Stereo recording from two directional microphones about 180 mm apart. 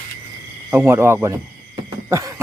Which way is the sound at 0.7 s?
15° right (ahead or behind).